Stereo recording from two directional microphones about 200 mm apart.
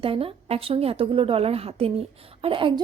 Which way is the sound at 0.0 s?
30° right (ahead or behind).